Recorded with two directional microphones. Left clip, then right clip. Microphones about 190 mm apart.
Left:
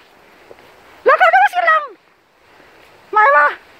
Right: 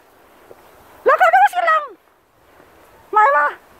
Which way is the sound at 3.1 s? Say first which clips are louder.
Left 3 dB; centre (ahead or behind).